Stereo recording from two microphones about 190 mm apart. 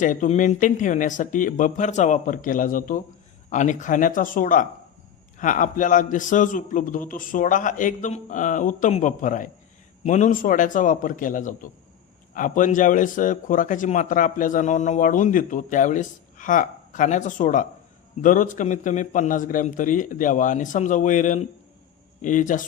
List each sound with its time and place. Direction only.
0.0 s a man's voice: 40° left (ahead or behind)